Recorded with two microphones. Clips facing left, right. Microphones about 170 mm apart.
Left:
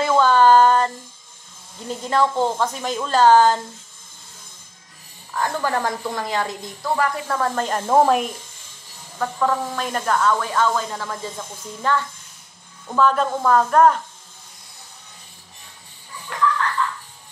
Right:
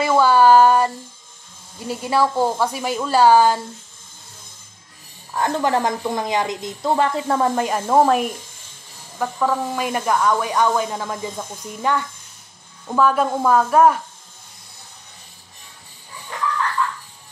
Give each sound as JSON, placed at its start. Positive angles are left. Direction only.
{"t": 0.0, "sound": "a sound", "side_deg": -10}
{"t": 1.9, "sound": "speech", "side_deg": -10}
{"t": 5.3, "sound": "a woman's voice", "side_deg": -20}